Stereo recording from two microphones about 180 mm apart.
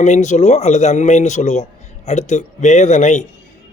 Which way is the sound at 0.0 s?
40° left (ahead or behind).